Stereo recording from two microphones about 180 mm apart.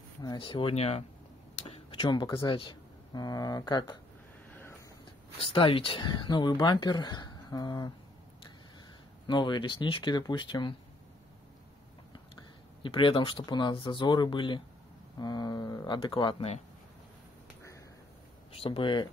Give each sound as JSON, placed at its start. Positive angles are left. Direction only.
{"t": 0.2, "sound": "speech", "side_deg": 25}
{"t": 5.4, "sound": "speech", "side_deg": 30}
{"t": 9.3, "sound": "speech", "side_deg": 25}
{"t": 12.8, "sound": "speech", "side_deg": 30}
{"t": 18.5, "sound": "speech", "side_deg": 30}